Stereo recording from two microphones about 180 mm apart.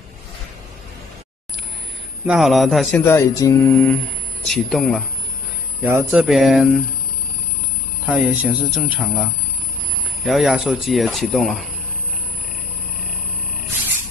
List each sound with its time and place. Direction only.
2.2 s speech: centre (ahead or behind)
3.1 s a sound: 15° left (ahead or behind)
4.5 s speech: centre (ahead or behind)
5.9 s speech: 10° right (ahead or behind)
8.1 s speech: 5° right (ahead or behind)